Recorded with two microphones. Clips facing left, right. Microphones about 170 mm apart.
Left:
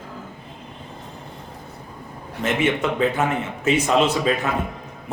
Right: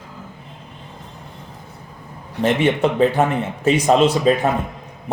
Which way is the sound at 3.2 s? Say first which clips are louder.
Right 4 dB; 40° right (ahead or behind).